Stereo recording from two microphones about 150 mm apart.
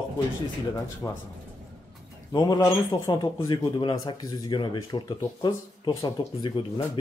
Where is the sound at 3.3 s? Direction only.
30° left (ahead or behind).